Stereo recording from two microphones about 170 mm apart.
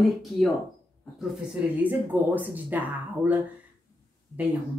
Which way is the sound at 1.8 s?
10° right (ahead or behind).